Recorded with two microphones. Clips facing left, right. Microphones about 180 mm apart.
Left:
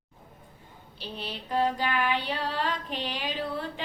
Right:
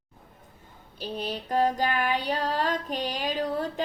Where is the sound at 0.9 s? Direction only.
45° right (ahead or behind).